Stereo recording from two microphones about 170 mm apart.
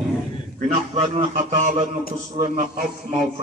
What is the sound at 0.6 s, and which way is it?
A man's voice, 45° right (ahead or behind).